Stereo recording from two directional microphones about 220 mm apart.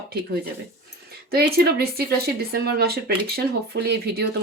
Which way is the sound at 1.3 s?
45° right (ahead or behind).